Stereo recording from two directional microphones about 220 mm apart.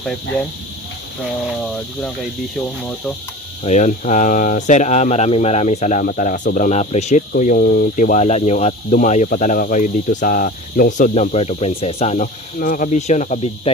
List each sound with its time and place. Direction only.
3.6 s speech: 35° left (ahead or behind)